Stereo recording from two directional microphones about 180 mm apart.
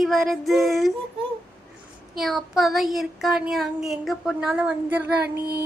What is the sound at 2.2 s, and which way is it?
Speech, centre (ahead or behind).